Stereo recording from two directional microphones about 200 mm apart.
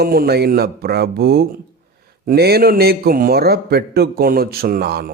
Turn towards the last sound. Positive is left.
turn(degrees=-50)  # may be behind; listen again after turning